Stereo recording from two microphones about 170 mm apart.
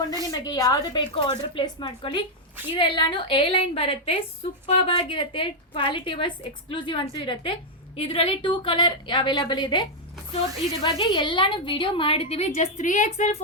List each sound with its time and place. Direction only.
0.3 s a woman's voice: 20° left (ahead or behind)
10.8 s a woman's voice: 30° left (ahead or behind)